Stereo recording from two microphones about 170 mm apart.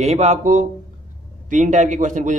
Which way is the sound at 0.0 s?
40° right (ahead or behind).